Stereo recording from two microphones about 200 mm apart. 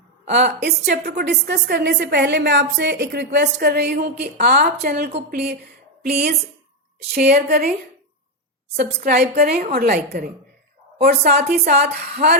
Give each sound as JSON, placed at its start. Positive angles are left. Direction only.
{"t": 0.3, "sound": "a woman's voice", "side_deg": -60}
{"t": 7.1, "sound": "a woman's voice", "side_deg": -50}
{"t": 8.7, "sound": "a woman's voice", "side_deg": -50}